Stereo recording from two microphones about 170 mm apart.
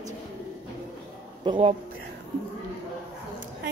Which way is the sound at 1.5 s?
30° right (ahead or behind).